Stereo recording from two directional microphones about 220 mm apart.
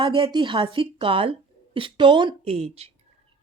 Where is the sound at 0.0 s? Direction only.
25° right (ahead or behind).